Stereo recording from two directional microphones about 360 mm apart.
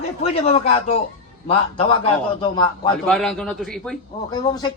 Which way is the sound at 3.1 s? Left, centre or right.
Centre.